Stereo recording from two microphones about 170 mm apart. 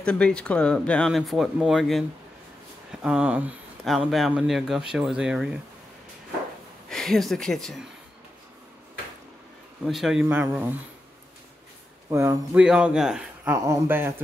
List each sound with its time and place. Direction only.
0.0 s speech: 5° left (ahead or behind)
6.9 s speech: centre (ahead or behind)
9.8 s speech: centre (ahead or behind)
10.2 s speech: 15° right (ahead or behind)
12.1 s speech: 15° right (ahead or behind)
12.6 s speech: 5° right (ahead or behind)